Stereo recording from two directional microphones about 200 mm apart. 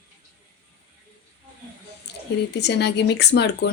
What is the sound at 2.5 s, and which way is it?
Speech, 55° left (ahead or behind).